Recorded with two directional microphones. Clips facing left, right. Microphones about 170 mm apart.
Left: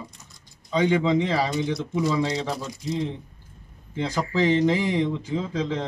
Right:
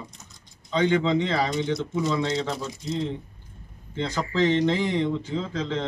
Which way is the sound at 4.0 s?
10° left (ahead or behind).